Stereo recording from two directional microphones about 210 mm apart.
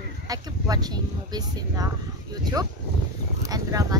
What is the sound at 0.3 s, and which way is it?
Speech, 20° right (ahead or behind).